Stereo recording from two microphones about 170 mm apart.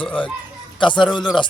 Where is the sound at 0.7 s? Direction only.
30° left (ahead or behind).